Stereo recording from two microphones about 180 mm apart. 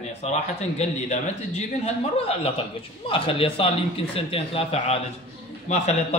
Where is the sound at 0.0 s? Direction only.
35° left (ahead or behind).